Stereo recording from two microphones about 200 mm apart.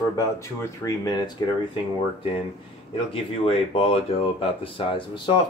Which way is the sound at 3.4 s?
30° left (ahead or behind).